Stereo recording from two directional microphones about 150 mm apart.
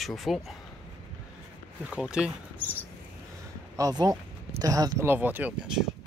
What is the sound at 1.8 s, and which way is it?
Speech, 5° right (ahead or behind).